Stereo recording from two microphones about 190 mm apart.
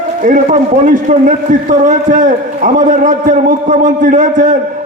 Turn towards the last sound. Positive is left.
turn(degrees=-45)  # may be behind; listen again after turning